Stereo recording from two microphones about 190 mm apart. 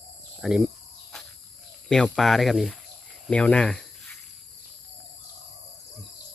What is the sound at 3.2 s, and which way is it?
Cricket, 5° left (ahead or behind).